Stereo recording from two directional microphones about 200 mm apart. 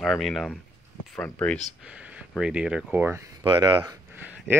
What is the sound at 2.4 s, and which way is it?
Speech, 5° right (ahead or behind).